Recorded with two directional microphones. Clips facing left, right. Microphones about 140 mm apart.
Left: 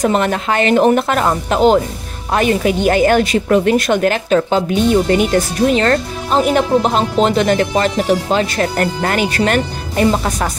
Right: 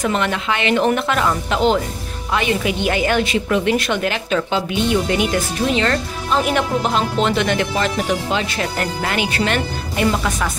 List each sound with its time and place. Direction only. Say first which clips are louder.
0.0 s a woman's voice: left 5 dB; 40° left (ahead or behind)